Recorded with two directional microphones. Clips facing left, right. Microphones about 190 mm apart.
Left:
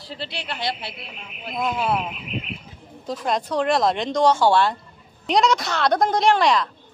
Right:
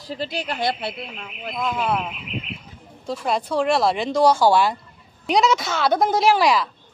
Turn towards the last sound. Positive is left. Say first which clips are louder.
# right 1 dB
turn(degrees=-5)  # may be behind; listen again after turning